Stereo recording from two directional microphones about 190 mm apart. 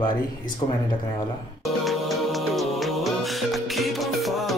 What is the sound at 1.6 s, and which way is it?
Music, centre (ahead or behind).